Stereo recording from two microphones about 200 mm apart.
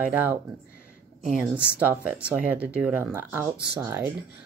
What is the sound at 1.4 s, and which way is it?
Speech, 5° right (ahead or behind).